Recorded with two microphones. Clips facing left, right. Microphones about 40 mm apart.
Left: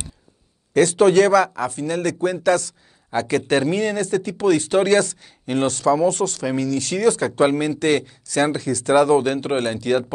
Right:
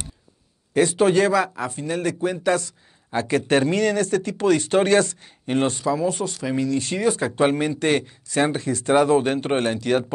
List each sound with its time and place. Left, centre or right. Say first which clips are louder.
0.7 s speech: left 3 dB; centre
3.4 s speech: even; right
5.7 s speech: left 5 dB; right
7.6 s speech: left 2 dB; right